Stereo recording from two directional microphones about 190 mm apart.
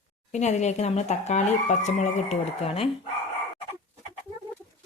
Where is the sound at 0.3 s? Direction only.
40° left (ahead or behind).